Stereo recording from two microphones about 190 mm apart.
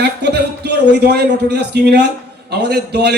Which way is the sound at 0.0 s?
60° right (ahead or behind).